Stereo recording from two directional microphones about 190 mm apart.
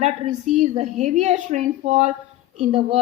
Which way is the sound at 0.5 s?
35° right (ahead or behind).